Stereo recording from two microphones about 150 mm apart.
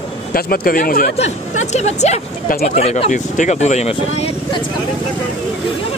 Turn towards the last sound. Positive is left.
turn(degrees=40)  # may be behind; listen again after turning